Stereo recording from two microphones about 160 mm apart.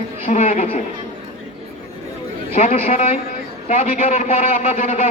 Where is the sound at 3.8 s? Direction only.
55° left (ahead or behind).